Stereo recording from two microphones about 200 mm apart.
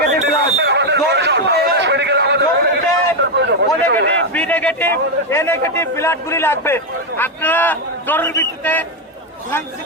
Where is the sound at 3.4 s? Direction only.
60° right (ahead or behind).